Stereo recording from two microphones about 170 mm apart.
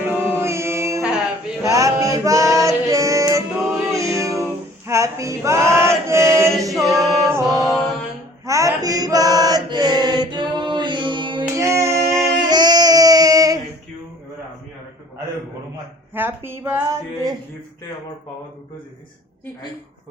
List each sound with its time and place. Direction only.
0.0 s music: 15° right (ahead or behind)
4.9 s male singing: 15° right (ahead or behind)
6.6 s a capella: 20° right (ahead or behind)
7.2 s music: 15° right (ahead or behind)
7.6 s mantra: centre (ahead or behind)
8.4 s male singing: 20° right (ahead or behind)
11.5 s child singing: 15° right (ahead or behind)
16.1 s speech: 10° right (ahead or behind)